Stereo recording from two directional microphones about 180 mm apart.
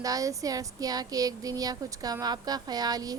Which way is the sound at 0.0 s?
20° right (ahead or behind).